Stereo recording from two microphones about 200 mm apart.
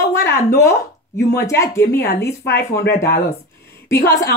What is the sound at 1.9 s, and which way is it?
Speech, 50° left (ahead or behind).